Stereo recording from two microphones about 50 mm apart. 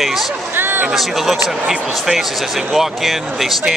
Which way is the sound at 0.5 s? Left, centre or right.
Right.